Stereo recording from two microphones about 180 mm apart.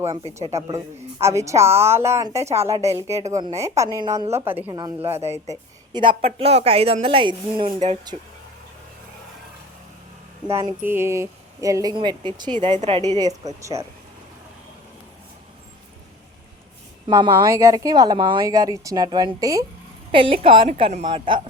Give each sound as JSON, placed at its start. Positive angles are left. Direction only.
{"t": 1.2, "sound": "a woman's voice", "side_deg": -15}
{"t": 3.2, "sound": "a woman's voice", "side_deg": -40}
{"t": 3.6, "sound": "a woman's voice", "side_deg": -15}
{"t": 4.6, "sound": "speech", "side_deg": -25}
{"t": 8.1, "sound": "a woman's voice", "side_deg": -40}
{"t": 10.5, "sound": "speech", "side_deg": -20}
{"t": 12.7, "sound": "a woman's voice", "side_deg": -40}
{"t": 13.1, "sound": "speech", "side_deg": -20}
{"t": 17.1, "sound": "speech", "side_deg": -20}
{"t": 20.1, "sound": "a woman's voice", "side_deg": -30}